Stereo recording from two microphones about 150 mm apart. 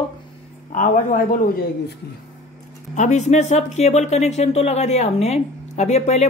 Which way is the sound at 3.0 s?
50° left (ahead or behind).